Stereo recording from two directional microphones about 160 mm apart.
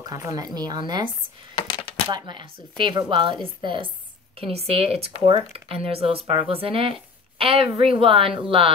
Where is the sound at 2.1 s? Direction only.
30° right (ahead or behind).